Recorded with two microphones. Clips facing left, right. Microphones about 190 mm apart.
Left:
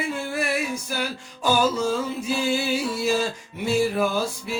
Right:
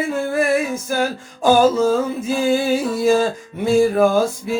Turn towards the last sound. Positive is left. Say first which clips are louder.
# right 8 dB
turn(degrees=-50)  # may be behind; listen again after turning